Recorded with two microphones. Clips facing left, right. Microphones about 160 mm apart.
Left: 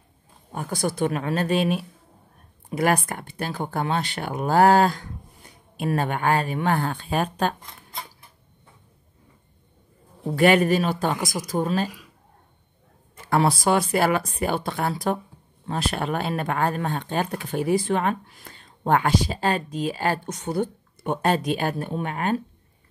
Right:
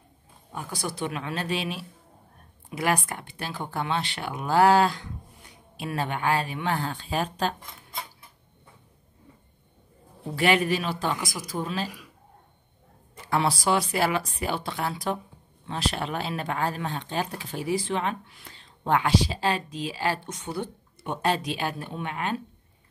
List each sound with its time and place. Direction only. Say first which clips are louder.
0.5 s speech: left 7 dB; 50° left (ahead or behind)
10.2 s speech: left 5 dB; 50° left (ahead or behind)
13.3 s speech: left 4 dB; 50° left (ahead or behind)